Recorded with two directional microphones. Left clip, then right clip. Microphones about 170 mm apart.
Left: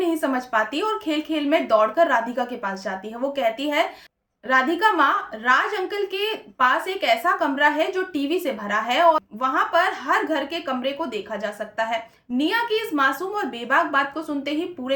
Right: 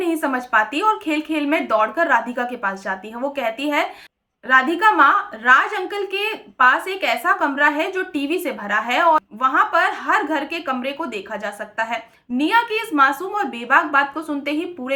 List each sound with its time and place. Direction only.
0.0 s a woman's voice: 20° right (ahead or behind)
12.7 s a woman's voice: 20° right (ahead or behind)